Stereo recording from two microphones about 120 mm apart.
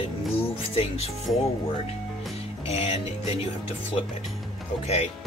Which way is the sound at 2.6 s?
55° left (ahead or behind).